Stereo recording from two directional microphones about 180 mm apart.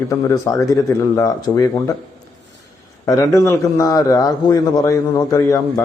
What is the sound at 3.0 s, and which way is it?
A man's voice, 15° left (ahead or behind).